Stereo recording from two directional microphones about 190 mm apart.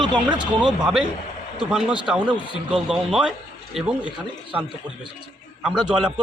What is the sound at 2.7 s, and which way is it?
A man's voice, 5° right (ahead or behind).